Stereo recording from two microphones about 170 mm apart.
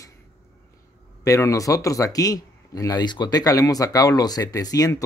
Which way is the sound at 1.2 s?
20° left (ahead or behind).